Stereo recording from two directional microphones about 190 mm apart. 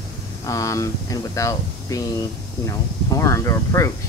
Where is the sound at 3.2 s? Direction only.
15° left (ahead or behind).